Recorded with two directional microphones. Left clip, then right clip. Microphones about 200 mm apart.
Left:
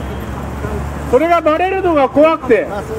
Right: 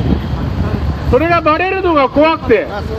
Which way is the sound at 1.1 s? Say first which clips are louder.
Even; 10° right (ahead or behind).